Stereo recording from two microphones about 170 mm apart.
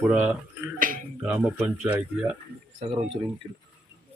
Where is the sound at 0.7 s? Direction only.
55° right (ahead or behind).